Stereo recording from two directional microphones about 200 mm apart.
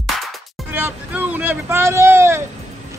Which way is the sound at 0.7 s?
10° right (ahead or behind).